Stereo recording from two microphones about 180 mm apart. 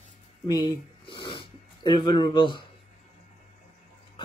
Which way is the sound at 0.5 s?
25° left (ahead or behind).